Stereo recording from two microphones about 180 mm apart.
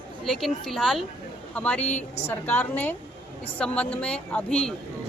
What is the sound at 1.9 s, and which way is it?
Speech, 35° left (ahead or behind).